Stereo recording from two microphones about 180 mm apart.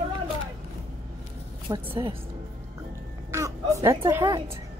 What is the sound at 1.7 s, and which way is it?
Speech, 30° right (ahead or behind).